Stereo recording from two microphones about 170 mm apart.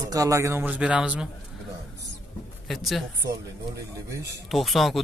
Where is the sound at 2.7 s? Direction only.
Centre (ahead or behind).